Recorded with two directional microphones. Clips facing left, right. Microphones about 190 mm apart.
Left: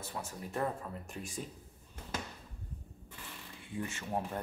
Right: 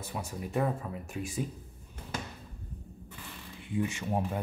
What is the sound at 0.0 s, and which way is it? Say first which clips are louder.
Speech: right 4 dB; 15° right (ahead or behind).